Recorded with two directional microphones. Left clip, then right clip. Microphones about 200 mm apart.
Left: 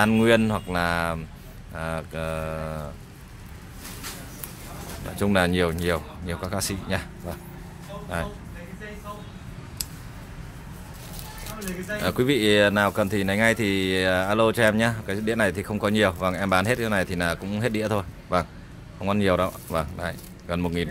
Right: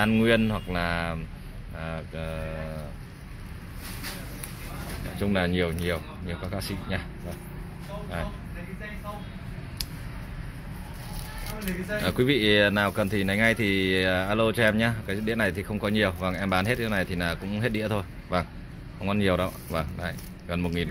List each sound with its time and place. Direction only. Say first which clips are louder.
0.0 s speech: left 3 dB; 25° left (ahead or behind)
5.2 s speech: left 5 dB; 30° left (ahead or behind)
12.0 s speech: left 2 dB; 15° left (ahead or behind)